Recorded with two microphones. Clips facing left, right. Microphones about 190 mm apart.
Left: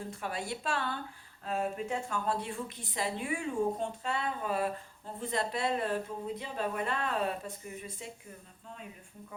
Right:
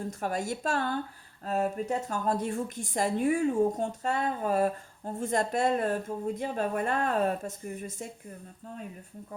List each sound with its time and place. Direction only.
0.1 s a woman's voice: 45° right (ahead or behind)